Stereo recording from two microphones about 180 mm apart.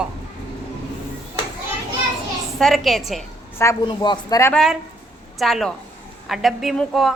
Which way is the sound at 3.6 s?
20° left (ahead or behind).